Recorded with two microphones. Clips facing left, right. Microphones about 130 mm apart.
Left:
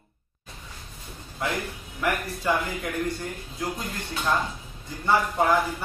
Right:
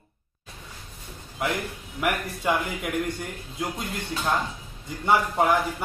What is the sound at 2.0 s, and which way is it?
Speech, 20° right (ahead or behind).